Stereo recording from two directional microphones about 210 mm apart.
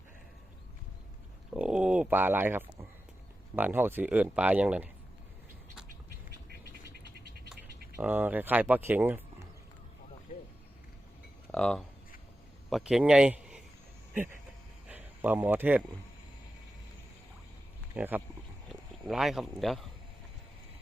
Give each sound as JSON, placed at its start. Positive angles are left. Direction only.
{"t": 1.5, "sound": "speech", "side_deg": -5}
{"t": 6.5, "sound": "bird", "side_deg": -50}
{"t": 7.9, "sound": "speech", "side_deg": -10}
{"t": 11.5, "sound": "speech", "side_deg": 5}
{"t": 14.8, "sound": "a sound", "side_deg": -10}
{"t": 17.9, "sound": "speech", "side_deg": -10}